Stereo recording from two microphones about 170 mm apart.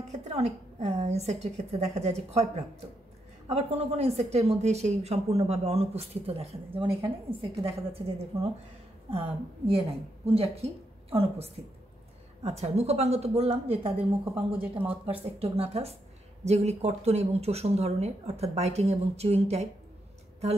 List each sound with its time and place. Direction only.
0.1 s a woman's voice: 40° right (ahead or behind)
3.4 s a woman's voice: 35° right (ahead or behind)
9.7 s a woman's voice: 35° right (ahead or behind)
14.2 s speech: 10° right (ahead or behind)
15.3 s a woman's voice: 35° right (ahead or behind)